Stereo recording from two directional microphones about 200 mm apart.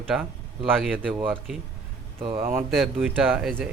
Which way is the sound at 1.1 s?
10° right (ahead or behind).